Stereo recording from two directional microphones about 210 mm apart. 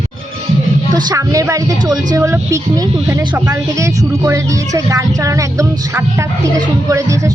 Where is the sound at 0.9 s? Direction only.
15° right (ahead or behind).